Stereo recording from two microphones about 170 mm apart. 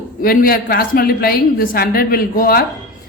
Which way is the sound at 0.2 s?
60° left (ahead or behind).